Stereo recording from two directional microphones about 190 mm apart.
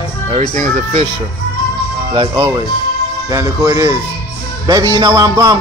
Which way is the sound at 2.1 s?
20° right (ahead or behind).